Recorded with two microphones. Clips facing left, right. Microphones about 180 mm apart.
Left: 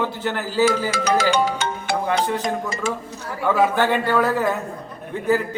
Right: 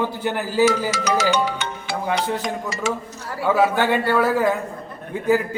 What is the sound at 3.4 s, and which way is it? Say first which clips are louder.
A man's voice: even; 10° right (ahead or behind).